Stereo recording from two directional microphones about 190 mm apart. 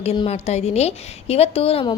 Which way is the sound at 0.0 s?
35° left (ahead or behind).